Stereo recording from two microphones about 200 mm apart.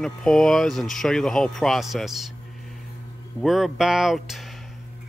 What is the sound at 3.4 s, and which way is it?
Speech, centre (ahead or behind).